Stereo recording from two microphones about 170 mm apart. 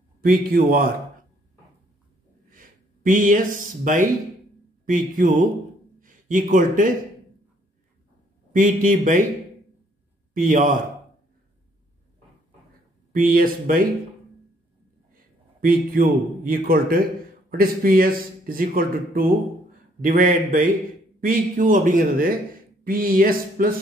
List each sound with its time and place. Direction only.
0.2 s speech: 55° right (ahead or behind)
3.1 s speech: 50° right (ahead or behind)
5.9 s a sound: 50° right (ahead or behind)
8.5 s speech: 50° right (ahead or behind)
10.3 s speech: 50° right (ahead or behind)
13.1 s speech: 55° right (ahead or behind)
15.6 s speech: 55° right (ahead or behind)